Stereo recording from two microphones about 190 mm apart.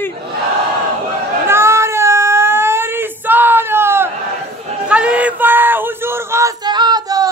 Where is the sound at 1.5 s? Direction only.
15° right (ahead or behind).